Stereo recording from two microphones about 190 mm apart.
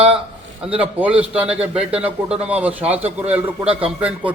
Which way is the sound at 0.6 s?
5° right (ahead or behind).